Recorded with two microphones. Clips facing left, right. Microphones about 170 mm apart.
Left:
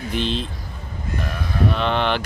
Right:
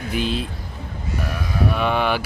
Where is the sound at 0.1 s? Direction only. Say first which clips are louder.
Right 1 dB; 5° right (ahead or behind).